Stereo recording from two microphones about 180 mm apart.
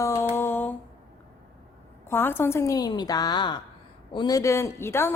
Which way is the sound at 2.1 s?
10° left (ahead or behind).